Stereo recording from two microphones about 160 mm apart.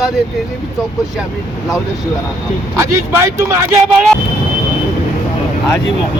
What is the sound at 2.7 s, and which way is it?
Speech, 15° right (ahead or behind).